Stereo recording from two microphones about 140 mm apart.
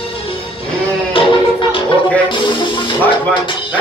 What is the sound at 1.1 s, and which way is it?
Music, 40° left (ahead or behind).